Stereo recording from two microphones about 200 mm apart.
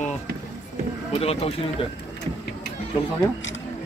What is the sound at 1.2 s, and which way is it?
Speech, 30° left (ahead or behind).